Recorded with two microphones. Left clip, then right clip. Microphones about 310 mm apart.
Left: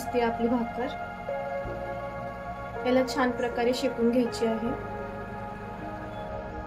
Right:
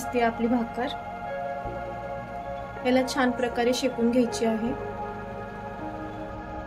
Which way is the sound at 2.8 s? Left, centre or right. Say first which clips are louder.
Right 1 dB; centre.